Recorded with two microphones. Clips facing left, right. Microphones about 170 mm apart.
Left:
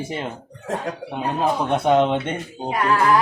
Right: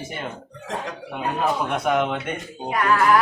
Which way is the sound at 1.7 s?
30° left (ahead or behind).